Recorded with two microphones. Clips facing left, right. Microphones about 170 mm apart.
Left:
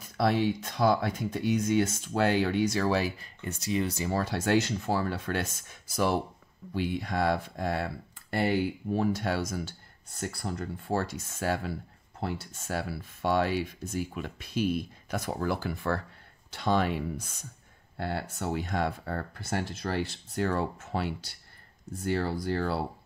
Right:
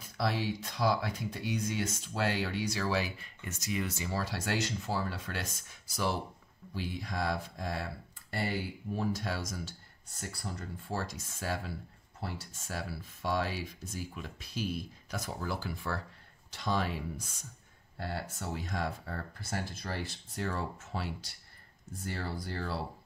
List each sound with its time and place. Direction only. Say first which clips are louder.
0.2 s speech: left 7 dB; 55° left (ahead or behind)
3.4 s speech: left 6 dB; 30° left (ahead or behind)
4.1 s speech: left 10 dB; 50° left (ahead or behind); by 22.8 s 65° left (ahead or behind)